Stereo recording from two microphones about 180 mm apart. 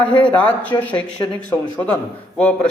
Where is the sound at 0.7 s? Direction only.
20° left (ahead or behind).